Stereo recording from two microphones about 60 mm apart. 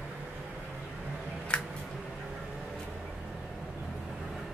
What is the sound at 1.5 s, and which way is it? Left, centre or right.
Single-lens reflex camera, centre.